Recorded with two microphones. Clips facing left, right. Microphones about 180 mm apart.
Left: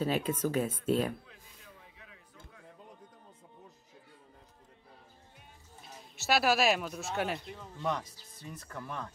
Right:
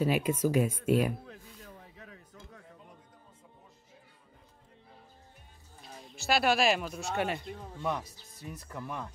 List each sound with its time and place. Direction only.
0.0 s speech: 10° right (ahead or behind)
1.2 s a sound: 45° right (ahead or behind)
5.8 s speech: centre (ahead or behind)